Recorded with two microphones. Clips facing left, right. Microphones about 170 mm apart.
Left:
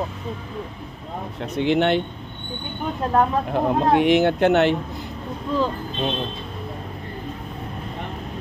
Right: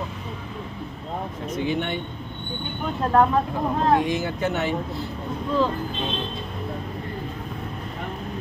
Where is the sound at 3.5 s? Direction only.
70° left (ahead or behind).